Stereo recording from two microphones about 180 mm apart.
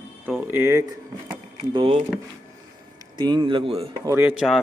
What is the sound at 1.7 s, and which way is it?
Speech, 30° right (ahead or behind).